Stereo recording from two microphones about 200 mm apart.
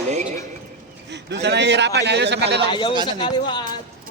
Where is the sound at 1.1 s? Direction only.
60° right (ahead or behind).